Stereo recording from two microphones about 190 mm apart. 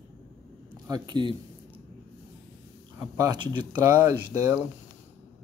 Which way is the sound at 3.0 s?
20° right (ahead or behind).